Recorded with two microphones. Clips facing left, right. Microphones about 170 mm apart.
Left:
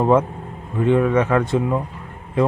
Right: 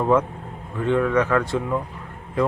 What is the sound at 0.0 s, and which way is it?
Speech, 25° left (ahead or behind).